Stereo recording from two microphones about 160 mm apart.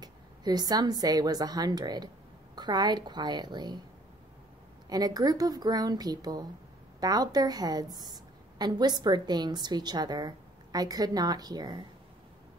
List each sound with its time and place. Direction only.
0.0 s a woman's voice: 25° right (ahead or behind)
4.8 s a woman's voice: 25° right (ahead or behind)